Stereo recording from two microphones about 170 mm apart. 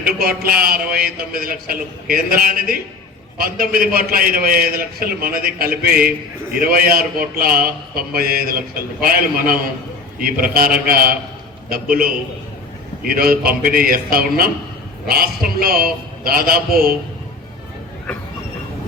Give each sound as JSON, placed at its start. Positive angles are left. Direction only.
{"t": 0.0, "sound": "a man's voice", "side_deg": -60}